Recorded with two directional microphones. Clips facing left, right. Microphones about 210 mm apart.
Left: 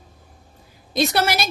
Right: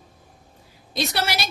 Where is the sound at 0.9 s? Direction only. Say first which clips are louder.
Left 5 dB; 50° left (ahead or behind).